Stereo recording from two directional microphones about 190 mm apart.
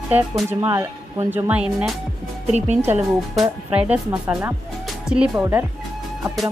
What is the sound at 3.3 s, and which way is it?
Speech, 5° right (ahead or behind).